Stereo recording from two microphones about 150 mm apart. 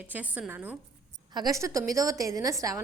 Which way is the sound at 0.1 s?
10° right (ahead or behind).